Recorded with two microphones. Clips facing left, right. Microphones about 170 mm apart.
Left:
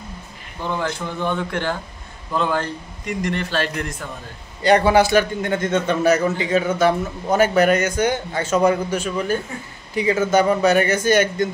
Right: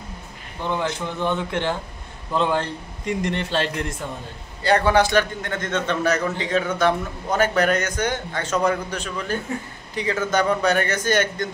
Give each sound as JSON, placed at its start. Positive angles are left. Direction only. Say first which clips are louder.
{"t": 0.7, "sound": "a man's voice", "louder": "even", "side_deg": -20}
{"t": 4.6, "sound": "a man's voice", "louder": "left 3 dB", "side_deg": 15}